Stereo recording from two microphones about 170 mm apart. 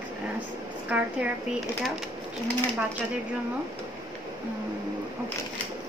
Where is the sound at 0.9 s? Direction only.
5° right (ahead or behind).